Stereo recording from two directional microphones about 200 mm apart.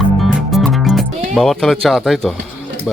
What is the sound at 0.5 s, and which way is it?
Music, centre (ahead or behind).